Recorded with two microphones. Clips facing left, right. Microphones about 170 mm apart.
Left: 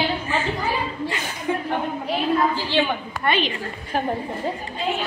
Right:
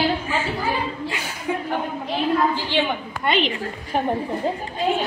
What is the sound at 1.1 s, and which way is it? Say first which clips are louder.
Chuckle: left 1 dB; 10° right (ahead or behind).